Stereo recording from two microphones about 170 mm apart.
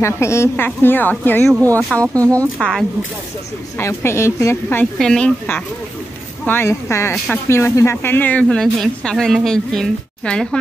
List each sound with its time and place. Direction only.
0.0 s a woman's voice: 15° left (ahead or behind)
3.8 s a woman's voice: 15° left (ahead or behind)
4.9 s a woman's voice: 5° left (ahead or behind)